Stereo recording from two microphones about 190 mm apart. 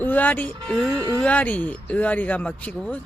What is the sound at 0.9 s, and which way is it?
Speech, 20° right (ahead or behind).